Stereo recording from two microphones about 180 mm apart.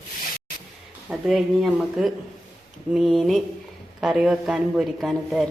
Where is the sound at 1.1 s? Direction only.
Centre (ahead or behind).